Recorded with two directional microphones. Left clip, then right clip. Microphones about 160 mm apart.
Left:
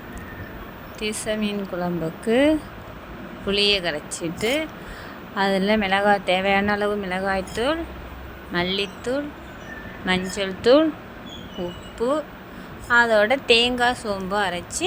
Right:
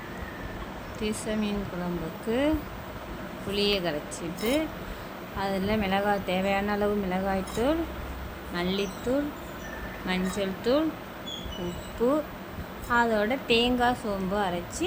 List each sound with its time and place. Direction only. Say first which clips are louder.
1.0 s speech: left 5 dB; 30° left (ahead or behind)
12.0 s speech: left 3 dB; 30° left (ahead or behind)